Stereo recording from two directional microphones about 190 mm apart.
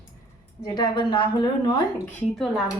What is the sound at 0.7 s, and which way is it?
Speech, 25° left (ahead or behind).